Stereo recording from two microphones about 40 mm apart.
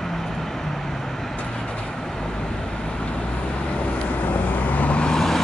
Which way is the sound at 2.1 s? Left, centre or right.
Centre.